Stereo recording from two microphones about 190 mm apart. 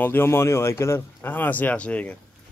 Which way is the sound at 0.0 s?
10° left (ahead or behind).